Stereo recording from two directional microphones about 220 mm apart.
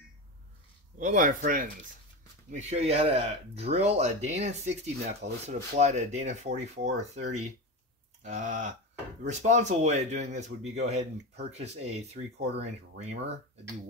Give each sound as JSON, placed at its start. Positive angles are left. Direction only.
{"t": 0.9, "sound": "speech", "side_deg": -35}